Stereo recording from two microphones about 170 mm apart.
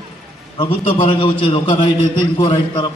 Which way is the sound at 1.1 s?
30° left (ahead or behind).